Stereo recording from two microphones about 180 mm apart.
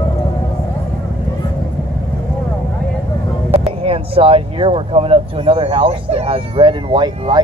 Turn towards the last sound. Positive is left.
turn(degrees=-25)  # may be behind; listen again after turning